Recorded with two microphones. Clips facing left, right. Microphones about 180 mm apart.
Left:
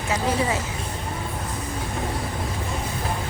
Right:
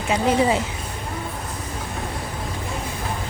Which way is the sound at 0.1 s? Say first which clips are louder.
Right 5 dB; 20° right (ahead or behind).